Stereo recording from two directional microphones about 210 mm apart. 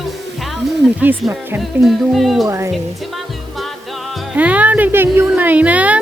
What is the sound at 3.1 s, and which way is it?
Music, centre (ahead or behind).